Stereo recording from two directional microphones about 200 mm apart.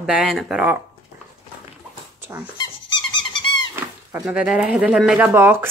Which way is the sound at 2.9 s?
20° left (ahead or behind).